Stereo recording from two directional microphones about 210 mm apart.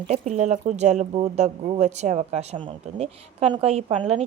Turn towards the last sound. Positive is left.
turn(degrees=-30)  # may be behind; listen again after turning